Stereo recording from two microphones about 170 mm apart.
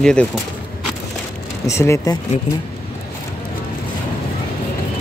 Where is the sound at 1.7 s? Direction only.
15° left (ahead or behind).